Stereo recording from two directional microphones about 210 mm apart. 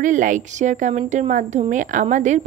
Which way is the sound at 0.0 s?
35° right (ahead or behind).